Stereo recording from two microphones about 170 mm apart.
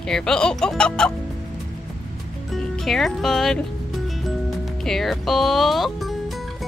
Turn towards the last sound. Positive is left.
turn(degrees=0)  # may be behind; listen again after turning